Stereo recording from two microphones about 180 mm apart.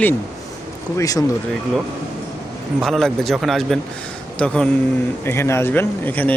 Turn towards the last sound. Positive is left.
turn(degrees=10)  # may be behind; listen again after turning